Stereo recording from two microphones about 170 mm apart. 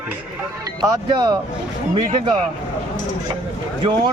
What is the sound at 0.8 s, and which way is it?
Speech, 20° right (ahead or behind).